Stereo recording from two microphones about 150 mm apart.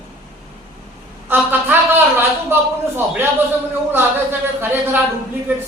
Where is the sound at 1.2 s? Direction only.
15° right (ahead or behind).